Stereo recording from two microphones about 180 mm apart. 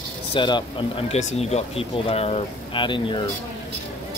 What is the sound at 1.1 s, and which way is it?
Speech, 35° left (ahead or behind).